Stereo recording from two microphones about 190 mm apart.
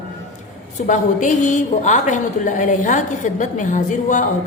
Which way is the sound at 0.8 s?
40° left (ahead or behind).